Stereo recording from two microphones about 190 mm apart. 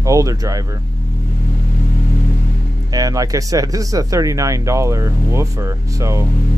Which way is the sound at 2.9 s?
20° right (ahead or behind).